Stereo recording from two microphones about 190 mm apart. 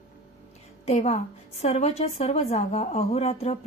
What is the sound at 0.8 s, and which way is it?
Speech, 35° left (ahead or behind).